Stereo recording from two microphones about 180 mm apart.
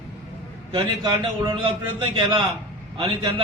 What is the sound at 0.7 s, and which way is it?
A man's voice, 25° right (ahead or behind).